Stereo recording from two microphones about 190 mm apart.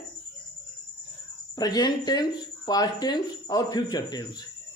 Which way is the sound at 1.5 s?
20° left (ahead or behind).